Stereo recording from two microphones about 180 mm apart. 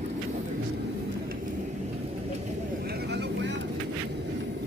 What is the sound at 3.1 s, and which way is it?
Vehicle, 70° right (ahead or behind).